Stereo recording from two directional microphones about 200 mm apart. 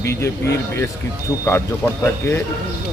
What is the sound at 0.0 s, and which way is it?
Speech, 15° left (ahead or behind).